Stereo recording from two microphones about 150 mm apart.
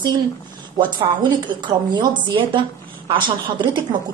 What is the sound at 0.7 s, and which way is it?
A woman's voice, 30° right (ahead or behind).